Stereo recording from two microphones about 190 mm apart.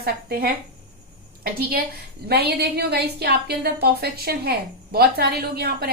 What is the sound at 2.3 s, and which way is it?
A woman's voice, 60° right (ahead or behind).